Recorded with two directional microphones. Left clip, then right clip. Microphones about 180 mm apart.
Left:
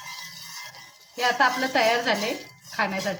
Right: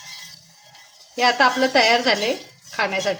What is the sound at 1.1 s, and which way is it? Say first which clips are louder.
A woman's voice: right 5 dB; 25° right (ahead or behind).